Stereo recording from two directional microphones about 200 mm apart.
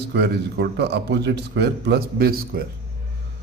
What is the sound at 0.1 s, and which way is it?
A man's voice, 60° right (ahead or behind).